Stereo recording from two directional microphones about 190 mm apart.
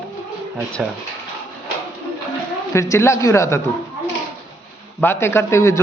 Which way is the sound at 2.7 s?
15° left (ahead or behind).